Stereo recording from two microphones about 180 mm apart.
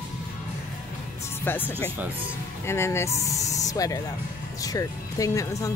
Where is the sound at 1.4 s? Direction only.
10° left (ahead or behind).